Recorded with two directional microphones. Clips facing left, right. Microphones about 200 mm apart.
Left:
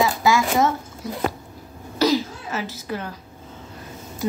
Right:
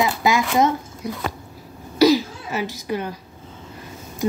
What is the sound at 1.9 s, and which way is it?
Cough, 10° right (ahead or behind).